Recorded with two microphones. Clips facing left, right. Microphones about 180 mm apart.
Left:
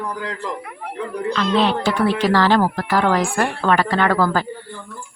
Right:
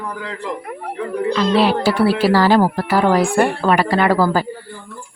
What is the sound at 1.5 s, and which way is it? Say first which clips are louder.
Speech: right 2 dB; 5° right (ahead or behind).